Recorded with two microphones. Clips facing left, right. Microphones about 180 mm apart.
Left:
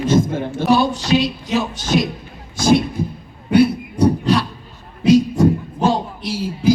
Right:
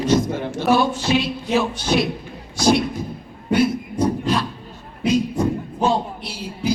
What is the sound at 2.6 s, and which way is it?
Speech, 50° left (ahead or behind).